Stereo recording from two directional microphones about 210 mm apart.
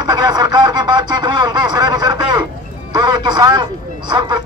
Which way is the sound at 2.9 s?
20° right (ahead or behind).